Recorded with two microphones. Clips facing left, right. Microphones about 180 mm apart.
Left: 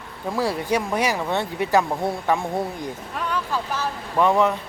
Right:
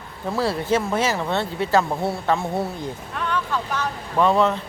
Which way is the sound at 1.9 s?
5° right (ahead or behind).